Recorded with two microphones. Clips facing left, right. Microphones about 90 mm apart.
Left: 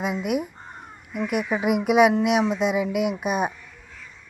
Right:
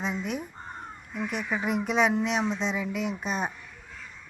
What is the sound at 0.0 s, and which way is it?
Speech, 10° left (ahead or behind).